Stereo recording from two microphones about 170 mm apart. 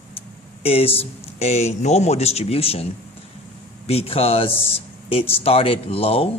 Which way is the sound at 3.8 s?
35° left (ahead or behind).